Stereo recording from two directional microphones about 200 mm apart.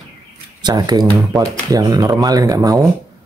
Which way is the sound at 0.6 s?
20° right (ahead or behind).